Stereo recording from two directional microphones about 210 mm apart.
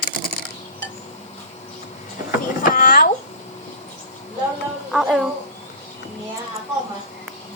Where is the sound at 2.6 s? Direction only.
40° left (ahead or behind).